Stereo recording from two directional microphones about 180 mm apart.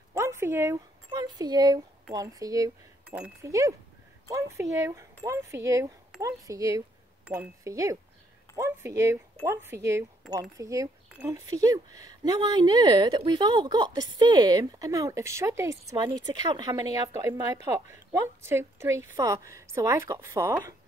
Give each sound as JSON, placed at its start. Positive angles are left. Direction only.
{"t": 0.1, "sound": "speech", "side_deg": -15}